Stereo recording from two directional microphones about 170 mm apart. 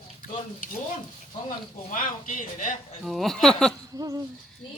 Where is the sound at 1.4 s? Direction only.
50° left (ahead or behind).